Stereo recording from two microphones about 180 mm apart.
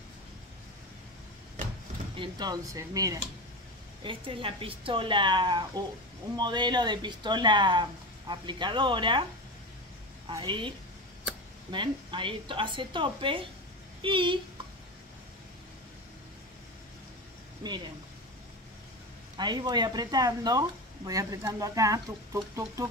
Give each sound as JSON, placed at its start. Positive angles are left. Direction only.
{"t": 2.1, "sound": "speech", "side_deg": -25}
{"t": 10.2, "sound": "a woman's voice", "side_deg": -25}
{"t": 11.7, "sound": "speech", "side_deg": -25}
{"t": 17.6, "sound": "speech", "side_deg": -25}
{"t": 19.3, "sound": "speech", "side_deg": -25}